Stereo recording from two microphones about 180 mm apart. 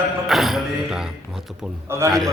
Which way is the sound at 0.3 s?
Centre (ahead or behind).